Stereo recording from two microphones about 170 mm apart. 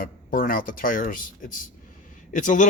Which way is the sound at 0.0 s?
55° left (ahead or behind).